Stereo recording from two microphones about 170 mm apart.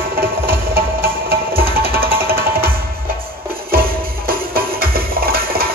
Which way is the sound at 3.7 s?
60° right (ahead or behind).